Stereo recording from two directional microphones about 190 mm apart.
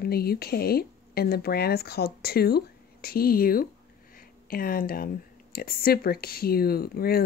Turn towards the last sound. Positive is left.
turn(degrees=55)  # may be behind; listen again after turning